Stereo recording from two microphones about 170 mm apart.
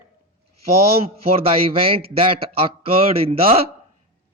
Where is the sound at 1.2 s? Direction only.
35° right (ahead or behind).